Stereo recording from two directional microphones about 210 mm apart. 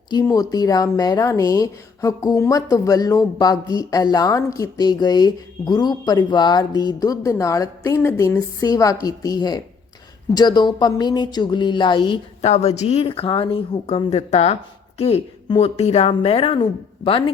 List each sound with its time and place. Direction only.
0.1 s a woman's voice: 15° left (ahead or behind)